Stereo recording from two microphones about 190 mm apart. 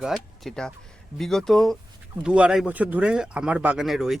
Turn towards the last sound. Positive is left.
turn(degrees=0)  # may be behind; listen again after turning